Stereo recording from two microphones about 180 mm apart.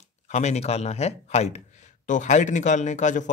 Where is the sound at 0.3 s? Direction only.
40° left (ahead or behind).